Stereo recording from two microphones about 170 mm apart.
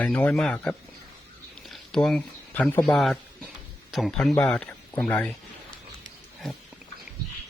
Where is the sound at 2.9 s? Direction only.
Centre (ahead or behind).